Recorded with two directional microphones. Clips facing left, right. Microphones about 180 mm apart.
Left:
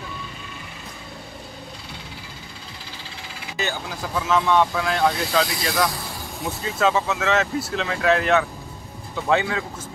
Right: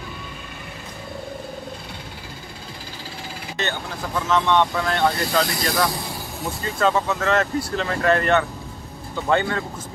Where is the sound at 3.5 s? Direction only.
5° left (ahead or behind).